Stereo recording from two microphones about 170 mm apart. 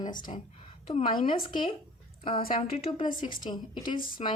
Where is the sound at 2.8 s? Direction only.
30° left (ahead or behind).